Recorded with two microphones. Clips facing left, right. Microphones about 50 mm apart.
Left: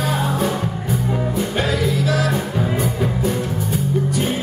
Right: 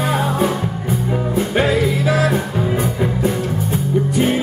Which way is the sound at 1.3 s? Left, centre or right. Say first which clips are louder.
Right 8 dB; right.